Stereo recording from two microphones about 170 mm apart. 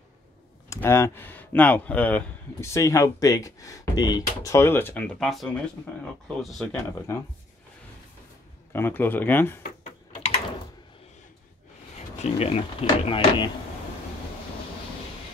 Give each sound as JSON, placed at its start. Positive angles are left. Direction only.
{"t": 0.7, "sound": "speech", "side_deg": 15}
{"t": 7.1, "sound": "speech", "side_deg": 15}
{"t": 8.7, "sound": "speech", "side_deg": 10}
{"t": 12.2, "sound": "speech", "side_deg": 40}